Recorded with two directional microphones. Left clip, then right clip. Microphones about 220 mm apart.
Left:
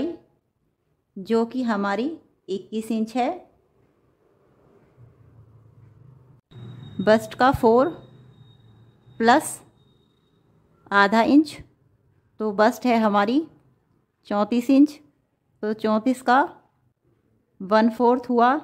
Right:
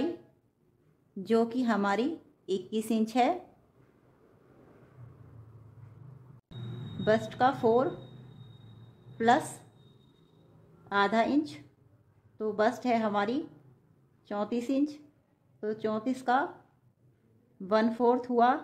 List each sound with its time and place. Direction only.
1.2 s a woman's voice: 25° left (ahead or behind)
7.1 s a woman's voice: 35° left (ahead or behind)
9.2 s speech: 35° left (ahead or behind)
10.9 s a woman's voice: 30° left (ahead or behind)
17.6 s speech: 30° left (ahead or behind)